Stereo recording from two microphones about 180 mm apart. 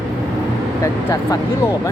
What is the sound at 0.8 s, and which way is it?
Speech, 20° left (ahead or behind).